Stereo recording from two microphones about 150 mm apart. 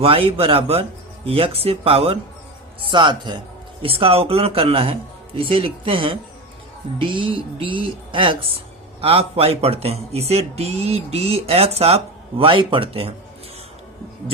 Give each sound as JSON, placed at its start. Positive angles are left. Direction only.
{"t": 0.0, "sound": "speech", "side_deg": -40}